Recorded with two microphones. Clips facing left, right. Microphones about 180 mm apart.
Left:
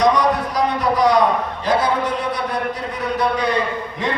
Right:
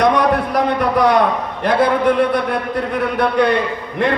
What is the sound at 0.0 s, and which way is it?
A man's voice, 60° right (ahead or behind).